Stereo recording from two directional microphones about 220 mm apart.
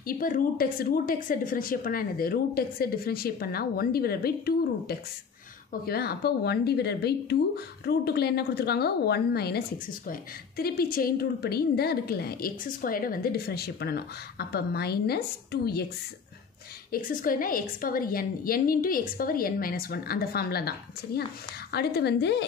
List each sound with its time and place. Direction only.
0.0 s a woman's voice: 40° left (ahead or behind)
16.9 s a woman's voice: 40° left (ahead or behind)